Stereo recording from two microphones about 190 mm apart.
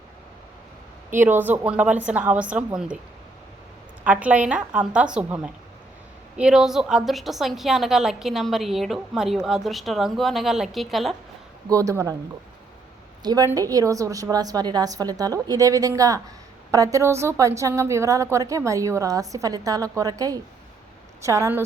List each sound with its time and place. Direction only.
1.1 s a woman's voice: 10° right (ahead or behind)
4.0 s a woman's voice: 10° right (ahead or behind)
11.7 s a woman's voice: 15° right (ahead or behind)
13.2 s a woman's voice: 20° right (ahead or behind)